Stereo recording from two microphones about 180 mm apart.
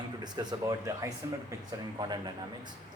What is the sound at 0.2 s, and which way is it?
Speech, 20° right (ahead or behind).